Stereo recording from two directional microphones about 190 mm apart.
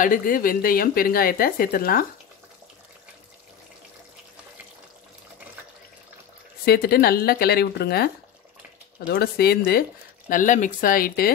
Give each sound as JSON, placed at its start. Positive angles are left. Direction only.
{"t": 0.0, "sound": "a woman's voice", "side_deg": 45}
{"t": 6.6, "sound": "a woman's voice", "side_deg": 55}